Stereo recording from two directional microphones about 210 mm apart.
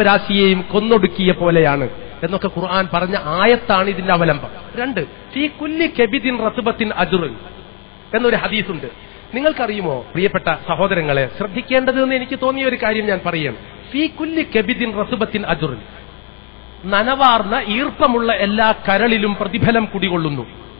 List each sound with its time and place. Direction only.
0.0 s a man's voice: 15° left (ahead or behind)
16.9 s a man's voice: 20° left (ahead or behind)